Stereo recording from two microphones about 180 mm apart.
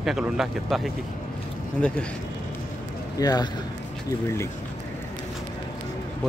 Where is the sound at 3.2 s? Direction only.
20° left (ahead or behind).